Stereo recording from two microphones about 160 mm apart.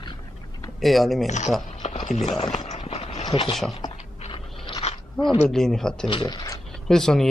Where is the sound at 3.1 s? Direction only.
30° left (ahead or behind).